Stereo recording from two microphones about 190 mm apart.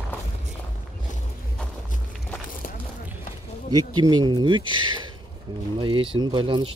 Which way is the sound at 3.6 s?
20° right (ahead or behind).